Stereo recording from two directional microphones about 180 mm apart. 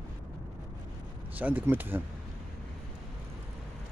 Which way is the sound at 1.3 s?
10° right (ahead or behind).